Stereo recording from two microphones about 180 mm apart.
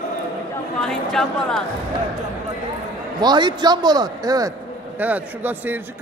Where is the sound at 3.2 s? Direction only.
25° right (ahead or behind).